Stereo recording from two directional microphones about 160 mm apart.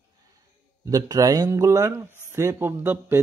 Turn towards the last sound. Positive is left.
turn(degrees=-15)  # may be behind; listen again after turning